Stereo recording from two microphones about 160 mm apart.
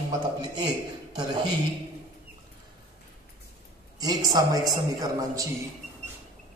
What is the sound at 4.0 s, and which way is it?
A man's voice, 25° right (ahead or behind).